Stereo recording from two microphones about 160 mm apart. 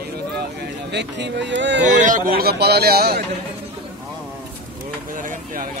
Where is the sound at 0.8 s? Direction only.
90° right.